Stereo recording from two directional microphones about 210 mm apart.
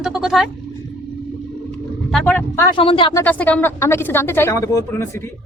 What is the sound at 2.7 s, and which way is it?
Speech, 25° left (ahead or behind).